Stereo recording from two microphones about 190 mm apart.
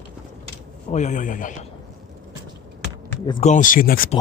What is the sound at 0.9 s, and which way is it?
Speech, 40° left (ahead or behind).